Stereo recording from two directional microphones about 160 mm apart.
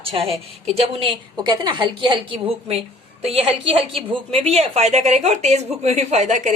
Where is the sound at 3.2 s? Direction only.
35° right (ahead or behind).